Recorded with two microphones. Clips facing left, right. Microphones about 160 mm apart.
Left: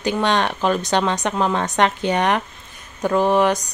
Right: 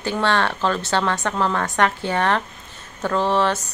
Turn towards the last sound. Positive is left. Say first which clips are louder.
# left 3 dB
turn(degrees=15)  # may be behind; listen again after turning